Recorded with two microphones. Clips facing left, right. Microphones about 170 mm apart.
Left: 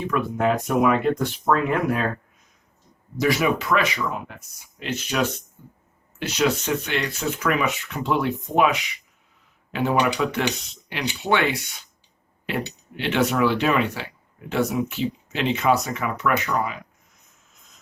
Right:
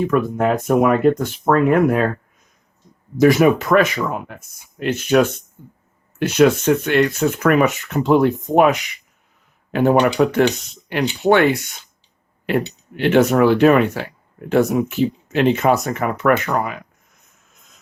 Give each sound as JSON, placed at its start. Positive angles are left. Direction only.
{"t": 0.1, "sound": "speech", "side_deg": -45}
{"t": 3.2, "sound": "speech", "side_deg": -50}
{"t": 13.0, "sound": "speech", "side_deg": -50}